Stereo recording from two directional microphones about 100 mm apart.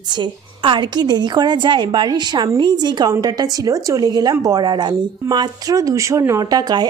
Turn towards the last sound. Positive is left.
turn(degrees=-40)  # may be behind; listen again after turning